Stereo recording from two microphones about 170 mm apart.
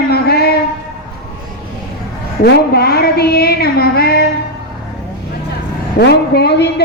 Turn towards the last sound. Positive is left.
turn(degrees=75)  # may be behind; listen again after turning